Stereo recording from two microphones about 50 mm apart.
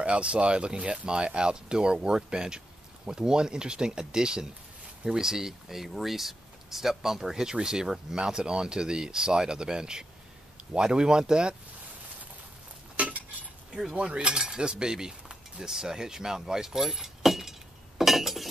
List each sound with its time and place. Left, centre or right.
0.0 s speech: right
13.9 s cutlery: right
15.7 s keys jangling: centre